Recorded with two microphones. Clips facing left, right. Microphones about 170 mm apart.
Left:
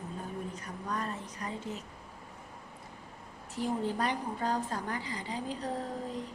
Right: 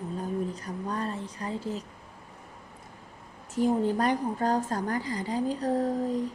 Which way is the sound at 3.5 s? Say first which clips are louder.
Right 7 dB; 45° right (ahead or behind).